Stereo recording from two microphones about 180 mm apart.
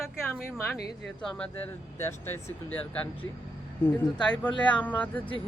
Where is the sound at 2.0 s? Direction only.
15° left (ahead or behind).